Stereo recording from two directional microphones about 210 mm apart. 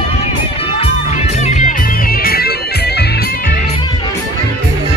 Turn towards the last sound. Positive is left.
turn(degrees=50)  # may be behind; listen again after turning